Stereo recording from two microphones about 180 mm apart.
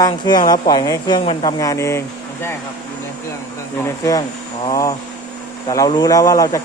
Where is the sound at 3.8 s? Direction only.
20° left (ahead or behind).